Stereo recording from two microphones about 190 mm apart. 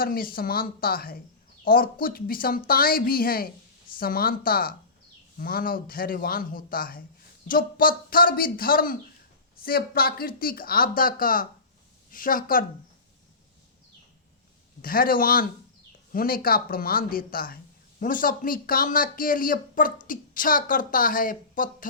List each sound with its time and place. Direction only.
0.0 s speech: 50° left (ahead or behind)
14.8 s speech: 50° left (ahead or behind)